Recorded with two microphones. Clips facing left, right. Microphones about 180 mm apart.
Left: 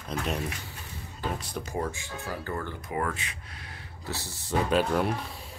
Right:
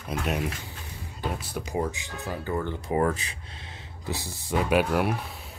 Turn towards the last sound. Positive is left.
turn(degrees=-10)  # may be behind; listen again after turning